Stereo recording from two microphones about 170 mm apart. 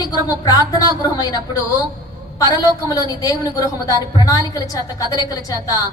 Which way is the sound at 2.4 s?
25° left (ahead or behind).